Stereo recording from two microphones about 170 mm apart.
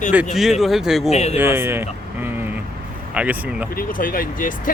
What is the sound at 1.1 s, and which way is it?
Speech, 40° left (ahead or behind).